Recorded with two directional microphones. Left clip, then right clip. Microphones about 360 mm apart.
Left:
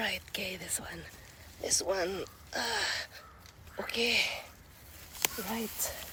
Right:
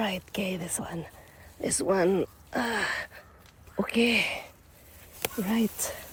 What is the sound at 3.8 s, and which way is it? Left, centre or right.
Speech, right.